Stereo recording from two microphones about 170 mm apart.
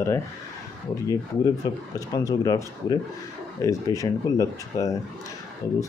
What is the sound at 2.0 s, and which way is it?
Speech, 20° left (ahead or behind).